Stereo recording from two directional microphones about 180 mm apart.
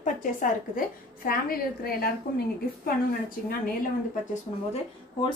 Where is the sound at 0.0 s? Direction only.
45° left (ahead or behind).